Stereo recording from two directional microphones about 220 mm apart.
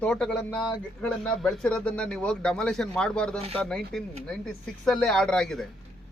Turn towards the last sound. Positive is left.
turn(degrees=0)  # may be behind; listen again after turning